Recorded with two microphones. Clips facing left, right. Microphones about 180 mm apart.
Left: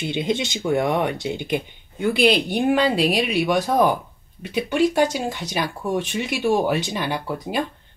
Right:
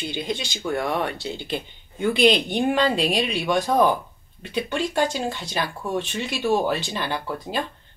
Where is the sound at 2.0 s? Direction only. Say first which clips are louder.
Even; 5° left (ahead or behind).